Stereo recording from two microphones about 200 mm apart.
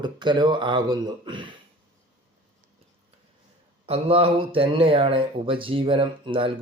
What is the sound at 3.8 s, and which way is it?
Speech, 30° right (ahead or behind).